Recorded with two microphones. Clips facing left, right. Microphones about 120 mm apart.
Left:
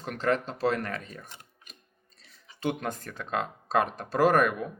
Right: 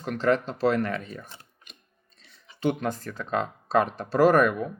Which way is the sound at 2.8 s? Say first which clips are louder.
Right 4 dB; 45° left (ahead or behind).